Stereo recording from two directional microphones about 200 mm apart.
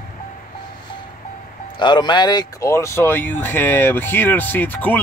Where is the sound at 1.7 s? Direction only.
20° left (ahead or behind).